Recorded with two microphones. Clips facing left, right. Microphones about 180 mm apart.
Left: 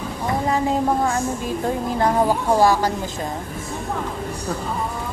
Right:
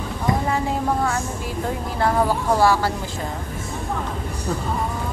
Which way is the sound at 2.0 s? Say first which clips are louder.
Even; 15° left (ahead or behind).